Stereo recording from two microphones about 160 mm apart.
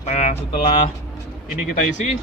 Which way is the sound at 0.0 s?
45° left (ahead or behind).